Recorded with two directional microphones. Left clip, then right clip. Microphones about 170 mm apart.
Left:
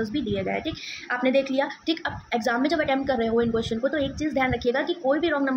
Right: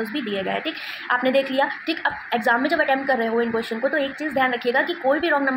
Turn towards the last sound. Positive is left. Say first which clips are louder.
# right 3 dB
turn(degrees=20)  # may be behind; listen again after turning